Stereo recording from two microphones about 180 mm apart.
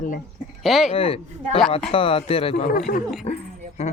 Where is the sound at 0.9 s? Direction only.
30° left (ahead or behind).